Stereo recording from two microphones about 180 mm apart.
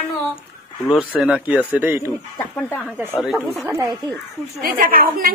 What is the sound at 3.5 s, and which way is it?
Speech, 15° right (ahead or behind).